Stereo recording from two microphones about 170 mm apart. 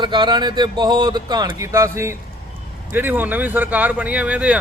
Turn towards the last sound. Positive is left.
turn(degrees=-10)  # may be behind; listen again after turning